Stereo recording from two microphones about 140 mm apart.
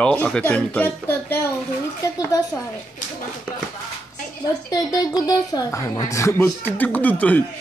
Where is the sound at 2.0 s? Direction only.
25° left (ahead or behind).